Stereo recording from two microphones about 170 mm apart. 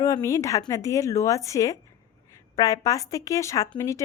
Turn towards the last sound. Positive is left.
turn(degrees=20)  # may be behind; listen again after turning